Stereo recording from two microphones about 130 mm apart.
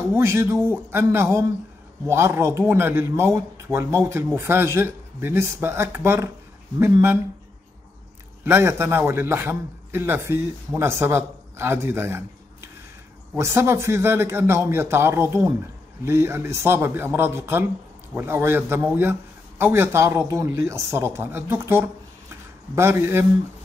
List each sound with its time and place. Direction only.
0.1 s a man's voice: 20° right (ahead or behind)
8.5 s a man's voice: 15° right (ahead or behind)
13.4 s a man's voice: 20° right (ahead or behind)
22.3 s a sound: 20° right (ahead or behind)